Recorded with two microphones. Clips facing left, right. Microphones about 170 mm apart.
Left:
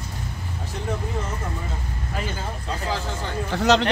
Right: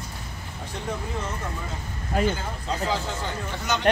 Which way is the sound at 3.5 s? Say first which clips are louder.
Left 11 dB; 80° left.